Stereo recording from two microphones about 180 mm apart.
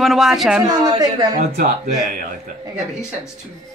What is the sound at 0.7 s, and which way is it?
Speech, 20° right (ahead or behind).